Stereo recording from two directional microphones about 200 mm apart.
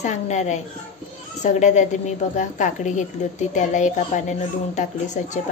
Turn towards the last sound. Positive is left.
turn(degrees=35)  # may be behind; listen again after turning